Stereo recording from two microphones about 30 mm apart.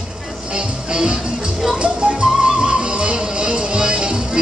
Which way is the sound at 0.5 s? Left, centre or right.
Right.